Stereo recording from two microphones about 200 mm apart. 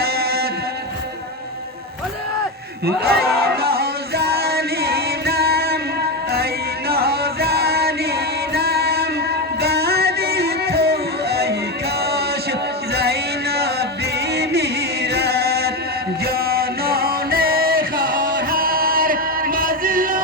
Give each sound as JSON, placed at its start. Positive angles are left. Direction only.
{"t": 0.0, "sound": "mantra", "side_deg": -50}
{"t": 2.8, "sound": "music", "side_deg": -50}
{"t": 6.3, "sound": "male singing", "side_deg": -50}
{"t": 9.6, "sound": "music", "side_deg": -55}
{"t": 12.0, "sound": "male singing", "side_deg": -55}
{"t": 14.3, "sound": "chant", "side_deg": -55}
{"t": 16.2, "sound": "music", "side_deg": -50}